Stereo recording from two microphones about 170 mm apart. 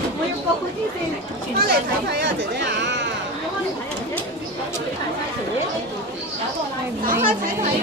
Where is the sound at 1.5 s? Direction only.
70° right (ahead or behind); by 3.1 s 90° right.